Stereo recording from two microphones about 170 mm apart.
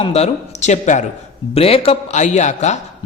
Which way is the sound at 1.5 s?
35° left (ahead or behind).